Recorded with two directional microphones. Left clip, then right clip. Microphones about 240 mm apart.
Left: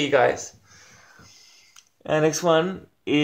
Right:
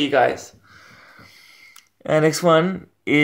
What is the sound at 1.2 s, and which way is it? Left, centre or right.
Speech, right.